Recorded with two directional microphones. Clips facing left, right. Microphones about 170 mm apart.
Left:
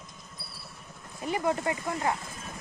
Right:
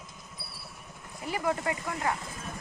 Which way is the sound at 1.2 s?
20° left (ahead or behind).